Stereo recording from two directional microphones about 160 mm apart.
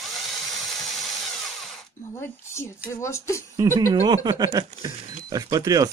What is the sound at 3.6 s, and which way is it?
Speech, 20° right (ahead or behind).